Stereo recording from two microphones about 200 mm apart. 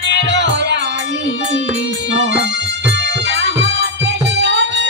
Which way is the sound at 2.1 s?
65° right (ahead or behind).